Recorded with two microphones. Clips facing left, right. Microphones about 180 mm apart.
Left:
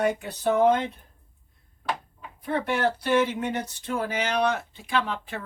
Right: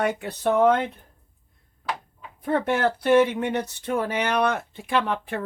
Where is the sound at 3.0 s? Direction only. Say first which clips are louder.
Right 5 dB; 60° right (ahead or behind).